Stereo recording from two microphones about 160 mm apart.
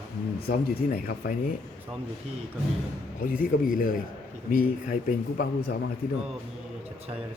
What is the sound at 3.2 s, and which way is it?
Speech, 60° left (ahead or behind).